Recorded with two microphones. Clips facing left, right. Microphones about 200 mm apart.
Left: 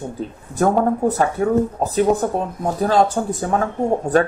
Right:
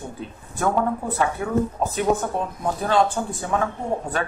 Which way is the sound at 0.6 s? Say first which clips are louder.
Left 6 dB; 40° left (ahead or behind).